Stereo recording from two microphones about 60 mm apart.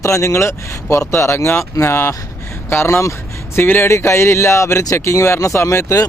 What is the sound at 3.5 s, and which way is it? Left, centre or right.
Speech, left.